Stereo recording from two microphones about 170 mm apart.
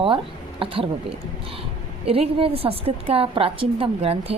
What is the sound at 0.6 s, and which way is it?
Speech, 30° right (ahead or behind).